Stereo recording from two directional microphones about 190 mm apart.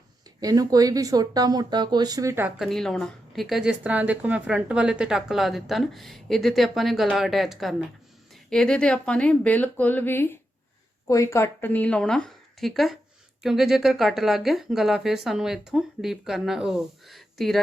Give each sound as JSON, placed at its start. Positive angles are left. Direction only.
{"t": 0.4, "sound": "speech", "side_deg": -20}
{"t": 2.6, "sound": "a woman's voice", "side_deg": 0}